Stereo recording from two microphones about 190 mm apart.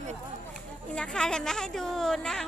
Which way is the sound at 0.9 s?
5° left (ahead or behind).